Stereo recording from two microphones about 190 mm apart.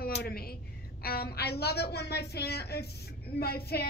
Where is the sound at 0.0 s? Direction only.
55° left (ahead or behind).